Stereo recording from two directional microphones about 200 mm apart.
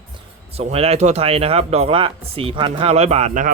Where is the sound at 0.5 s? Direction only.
30° right (ahead or behind).